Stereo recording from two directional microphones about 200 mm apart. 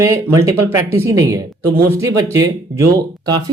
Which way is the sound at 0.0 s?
15° right (ahead or behind).